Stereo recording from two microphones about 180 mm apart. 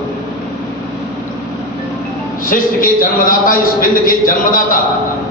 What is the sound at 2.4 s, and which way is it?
A man's voice, 50° left (ahead or behind).